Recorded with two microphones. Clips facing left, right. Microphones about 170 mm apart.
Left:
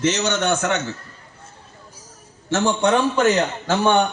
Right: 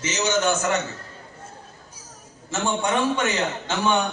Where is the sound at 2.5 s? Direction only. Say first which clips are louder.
Left 6 dB; 80° left.